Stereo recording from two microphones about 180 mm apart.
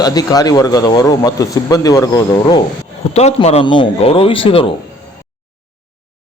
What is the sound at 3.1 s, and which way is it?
A man's voice, 35° left (ahead or behind).